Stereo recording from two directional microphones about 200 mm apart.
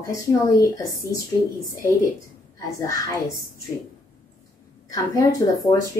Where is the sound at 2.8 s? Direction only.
15° left (ahead or behind).